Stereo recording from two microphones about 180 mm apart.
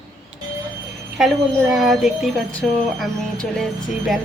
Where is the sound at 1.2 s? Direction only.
Centre (ahead or behind).